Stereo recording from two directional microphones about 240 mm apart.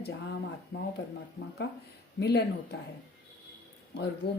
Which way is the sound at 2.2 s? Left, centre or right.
Left.